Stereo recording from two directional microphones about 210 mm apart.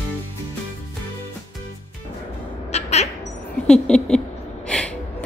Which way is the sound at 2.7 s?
30° left (ahead or behind).